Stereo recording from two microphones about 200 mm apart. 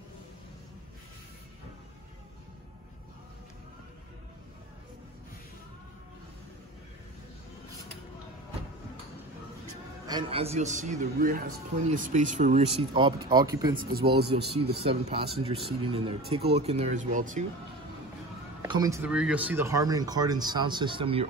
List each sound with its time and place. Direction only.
10.0 s a man's voice: 25° right (ahead or behind)
13.7 s speech: 50° right (ahead or behind)
14.8 s a man's voice: 30° right (ahead or behind)
18.6 s speech: 15° right (ahead or behind)